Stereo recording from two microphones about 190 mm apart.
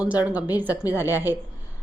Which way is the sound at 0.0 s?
10° right (ahead or behind).